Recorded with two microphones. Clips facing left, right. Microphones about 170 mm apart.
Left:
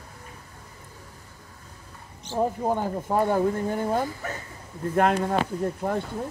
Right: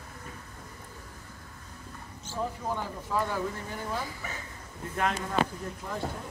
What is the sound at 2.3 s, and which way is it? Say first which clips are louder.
Speech: left 8 dB; 50° left (ahead or behind).